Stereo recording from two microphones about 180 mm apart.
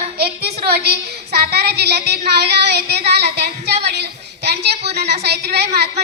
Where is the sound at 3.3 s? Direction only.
65° right (ahead or behind).